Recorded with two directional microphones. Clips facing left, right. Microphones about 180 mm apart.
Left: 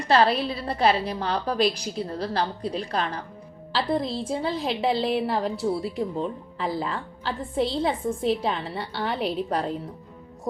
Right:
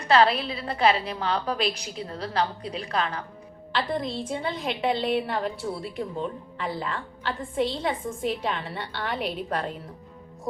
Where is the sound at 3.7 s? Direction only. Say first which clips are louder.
Left 3 dB; 30° left (ahead or behind).